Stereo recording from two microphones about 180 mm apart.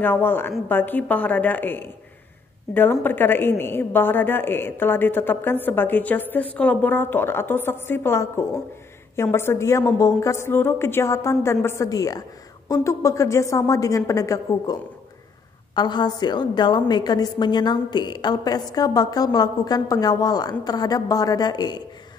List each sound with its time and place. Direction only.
0.0 s a woman's voice: 10° left (ahead or behind)